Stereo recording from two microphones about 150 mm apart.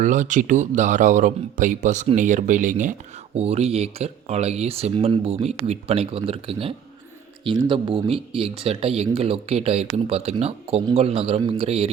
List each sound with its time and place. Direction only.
0.0 s speech: 55° right (ahead or behind)
3.3 s speech: 45° right (ahead or behind)